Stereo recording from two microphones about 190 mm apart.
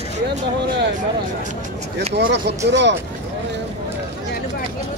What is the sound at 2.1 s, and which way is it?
Speech, 65° right (ahead or behind).